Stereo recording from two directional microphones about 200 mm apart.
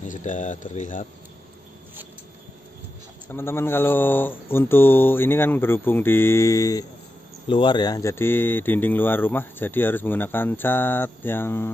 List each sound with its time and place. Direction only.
0.0 s speech: 40° left (ahead or behind)
3.3 s speech: 10° left (ahead or behind)